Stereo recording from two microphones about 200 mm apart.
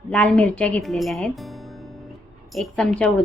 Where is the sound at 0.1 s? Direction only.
5° left (ahead or behind).